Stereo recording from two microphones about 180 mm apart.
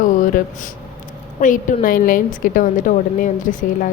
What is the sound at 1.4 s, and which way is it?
A woman's voice, 45° left (ahead or behind).